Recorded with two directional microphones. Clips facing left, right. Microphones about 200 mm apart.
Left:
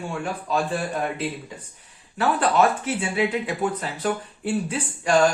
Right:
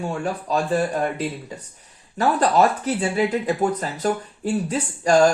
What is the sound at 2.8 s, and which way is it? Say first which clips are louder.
Speech: right 3 dB; 40° right (ahead or behind).